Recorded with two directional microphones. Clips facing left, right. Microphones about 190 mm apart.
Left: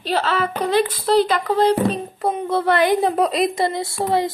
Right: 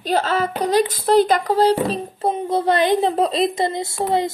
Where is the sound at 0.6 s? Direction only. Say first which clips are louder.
Right 1 dB; 40° right (ahead or behind).